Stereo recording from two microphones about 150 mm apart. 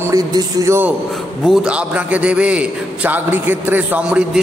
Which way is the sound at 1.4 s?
5° right (ahead or behind).